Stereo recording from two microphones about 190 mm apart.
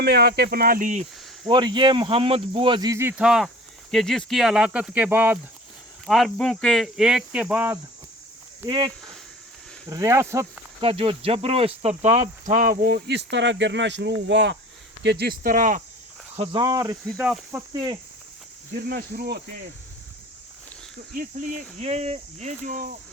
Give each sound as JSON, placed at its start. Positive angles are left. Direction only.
{"t": 0.0, "sound": "speech", "side_deg": -55}
{"t": 1.5, "sound": "speech", "side_deg": -25}
{"t": 6.1, "sound": "speech", "side_deg": 0}
{"t": 9.9, "sound": "speech", "side_deg": -15}
{"t": 10.8, "sound": "cricket", "side_deg": -30}
{"t": 14.3, "sound": "speech", "side_deg": -70}
{"t": 15.0, "sound": "cricket", "side_deg": -55}
{"t": 16.3, "sound": "speech", "side_deg": -30}
{"t": 17.2, "sound": "speech", "side_deg": -10}
{"t": 18.9, "sound": "speech", "side_deg": -55}
{"t": 21.2, "sound": "speech", "side_deg": -40}